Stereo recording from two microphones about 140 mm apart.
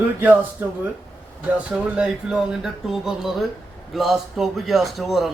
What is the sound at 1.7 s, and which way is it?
Speech, 10° right (ahead or behind).